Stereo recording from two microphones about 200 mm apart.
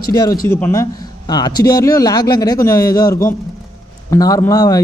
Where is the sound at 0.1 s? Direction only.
20° left (ahead or behind).